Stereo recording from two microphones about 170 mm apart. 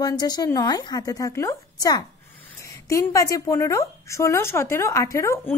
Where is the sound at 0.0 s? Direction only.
25° left (ahead or behind).